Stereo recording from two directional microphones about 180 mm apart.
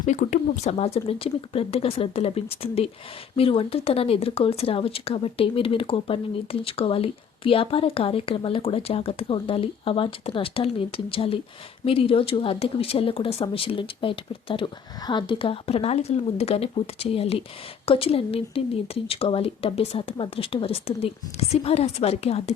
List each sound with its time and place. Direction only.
0.0 s speech: 45° left (ahead or behind)